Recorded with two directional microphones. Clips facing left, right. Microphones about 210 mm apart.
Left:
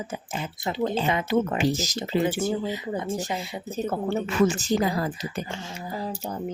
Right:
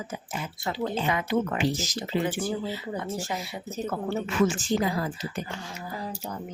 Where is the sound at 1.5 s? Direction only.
40° left (ahead or behind).